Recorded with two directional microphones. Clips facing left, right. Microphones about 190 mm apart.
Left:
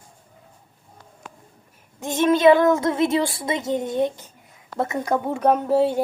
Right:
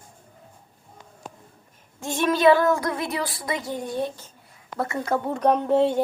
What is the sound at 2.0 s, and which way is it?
Speech, 20° left (ahead or behind).